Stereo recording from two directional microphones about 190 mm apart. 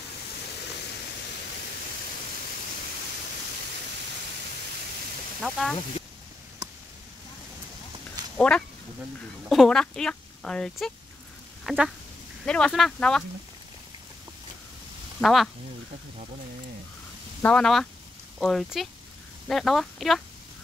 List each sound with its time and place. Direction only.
5.4 s speech: centre (ahead or behind)
8.4 s a woman's voice: 5° left (ahead or behind)
15.1 s speech: centre (ahead or behind)
17.4 s speech: 5° left (ahead or behind)